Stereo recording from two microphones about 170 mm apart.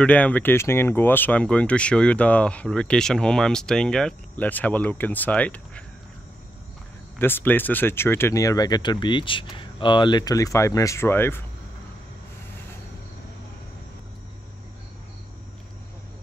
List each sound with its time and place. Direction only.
0.0 s speech: 10° left (ahead or behind)
7.2 s speech: 10° left (ahead or behind)